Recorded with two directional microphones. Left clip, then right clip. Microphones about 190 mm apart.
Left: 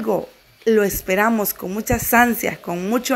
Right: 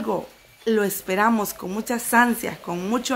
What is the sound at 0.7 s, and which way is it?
Speech, 15° left (ahead or behind).